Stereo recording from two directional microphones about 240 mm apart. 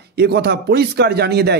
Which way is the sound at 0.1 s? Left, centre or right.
Right.